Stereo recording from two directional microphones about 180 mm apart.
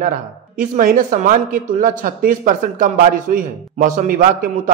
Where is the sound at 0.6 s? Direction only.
50° right (ahead or behind).